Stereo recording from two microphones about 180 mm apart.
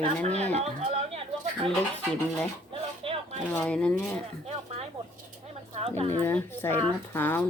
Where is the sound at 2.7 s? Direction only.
30° right (ahead or behind).